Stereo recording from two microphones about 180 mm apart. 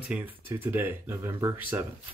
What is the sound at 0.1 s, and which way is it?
Speech, 10° right (ahead or behind).